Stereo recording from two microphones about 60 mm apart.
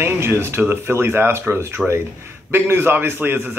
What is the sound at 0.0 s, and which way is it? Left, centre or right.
A man's voice, right.